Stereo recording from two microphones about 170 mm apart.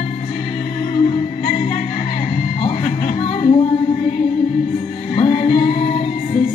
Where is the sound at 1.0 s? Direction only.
40° left (ahead or behind).